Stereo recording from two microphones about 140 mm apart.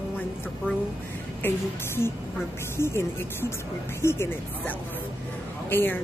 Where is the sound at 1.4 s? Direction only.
15° left (ahead or behind).